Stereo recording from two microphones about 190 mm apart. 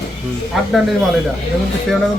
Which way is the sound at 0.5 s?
Centre (ahead or behind).